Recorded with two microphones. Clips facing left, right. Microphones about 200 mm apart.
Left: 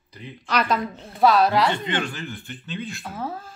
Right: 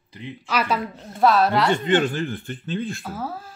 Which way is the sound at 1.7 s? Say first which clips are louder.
Right 7 dB; 45° right (ahead or behind).